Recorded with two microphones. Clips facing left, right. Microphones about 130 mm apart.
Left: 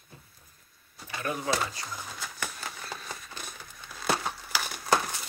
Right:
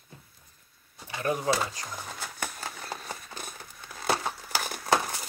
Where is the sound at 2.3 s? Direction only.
40° right (ahead or behind).